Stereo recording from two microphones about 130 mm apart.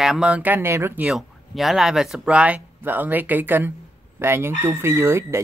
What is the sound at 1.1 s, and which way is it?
Speech, centre (ahead or behind).